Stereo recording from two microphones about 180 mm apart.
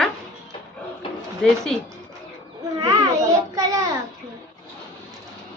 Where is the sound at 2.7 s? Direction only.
20° right (ahead or behind).